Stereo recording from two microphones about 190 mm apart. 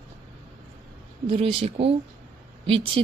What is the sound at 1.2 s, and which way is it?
Speech, 30° right (ahead or behind).